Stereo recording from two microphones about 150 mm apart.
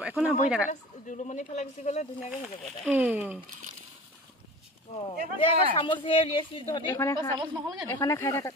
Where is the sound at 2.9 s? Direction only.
10° right (ahead or behind).